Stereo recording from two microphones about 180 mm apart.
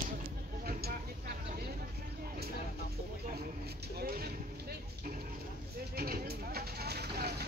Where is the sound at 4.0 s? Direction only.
55° right (ahead or behind).